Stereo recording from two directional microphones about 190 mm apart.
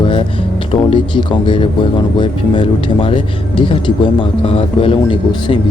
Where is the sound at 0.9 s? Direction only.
25° left (ahead or behind).